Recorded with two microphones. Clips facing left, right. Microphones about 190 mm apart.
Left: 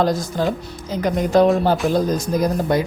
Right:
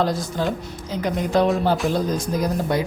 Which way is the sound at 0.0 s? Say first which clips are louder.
Left 3 dB; 45° left (ahead or behind).